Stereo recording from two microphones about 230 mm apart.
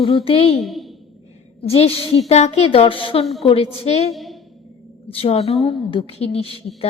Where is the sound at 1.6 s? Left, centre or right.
Left.